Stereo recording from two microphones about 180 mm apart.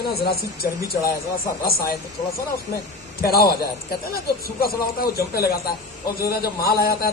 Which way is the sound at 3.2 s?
60° left (ahead or behind).